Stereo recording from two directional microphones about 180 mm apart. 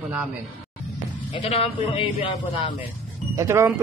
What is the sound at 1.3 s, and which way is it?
A man's voice, 35° left (ahead or behind).